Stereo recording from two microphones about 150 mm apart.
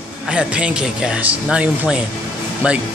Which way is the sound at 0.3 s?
5° right (ahead or behind).